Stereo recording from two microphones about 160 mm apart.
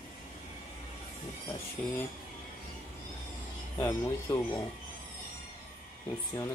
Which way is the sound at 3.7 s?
20° left (ahead or behind).